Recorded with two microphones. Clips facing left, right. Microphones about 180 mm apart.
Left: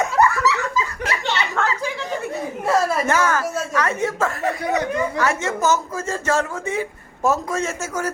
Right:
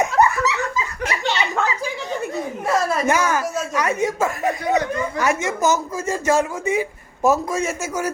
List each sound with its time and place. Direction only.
0.0 s laughter: 20° right (ahead or behind)
1.0 s a sound: 15° right (ahead or behind)
3.1 s a man's voice: 15° right (ahead or behind)